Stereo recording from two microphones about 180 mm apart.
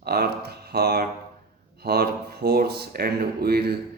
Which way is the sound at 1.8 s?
60° right (ahead or behind).